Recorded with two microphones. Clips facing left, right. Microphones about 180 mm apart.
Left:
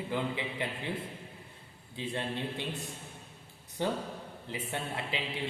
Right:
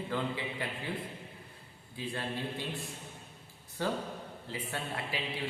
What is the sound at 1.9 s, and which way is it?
Speech, 20° left (ahead or behind).